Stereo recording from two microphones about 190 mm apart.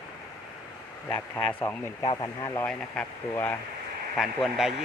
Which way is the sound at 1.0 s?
5° left (ahead or behind).